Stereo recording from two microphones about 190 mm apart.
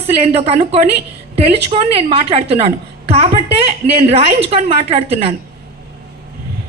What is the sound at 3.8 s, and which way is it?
A woman's voice, 35° right (ahead or behind).